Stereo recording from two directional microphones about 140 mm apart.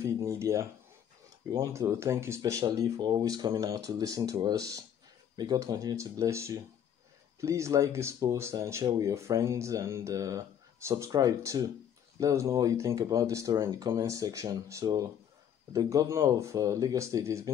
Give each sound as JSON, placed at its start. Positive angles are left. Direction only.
{"t": 0.0, "sound": "speech", "side_deg": -20}